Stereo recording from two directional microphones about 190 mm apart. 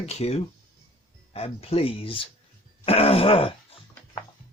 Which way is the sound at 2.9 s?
30° left (ahead or behind).